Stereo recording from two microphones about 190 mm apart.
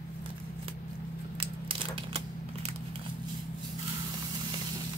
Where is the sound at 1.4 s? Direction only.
30° right (ahead or behind).